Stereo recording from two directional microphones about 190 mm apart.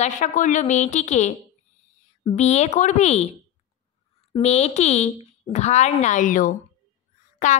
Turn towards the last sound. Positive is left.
turn(degrees=40)  # may be behind; listen again after turning